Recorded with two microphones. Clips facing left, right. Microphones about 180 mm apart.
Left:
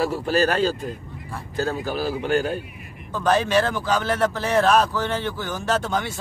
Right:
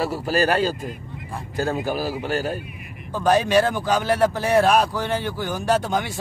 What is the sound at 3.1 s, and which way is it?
A man's voice, 10° right (ahead or behind).